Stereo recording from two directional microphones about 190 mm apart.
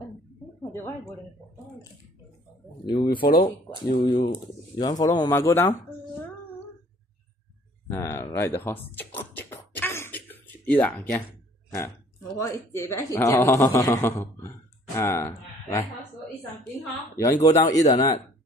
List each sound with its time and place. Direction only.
2.9 s speech: 25° left (ahead or behind)
7.9 s beatboxing: 15° left (ahead or behind)
12.4 s speech: 15° left (ahead or behind)
17.2 s speech: 15° left (ahead or behind)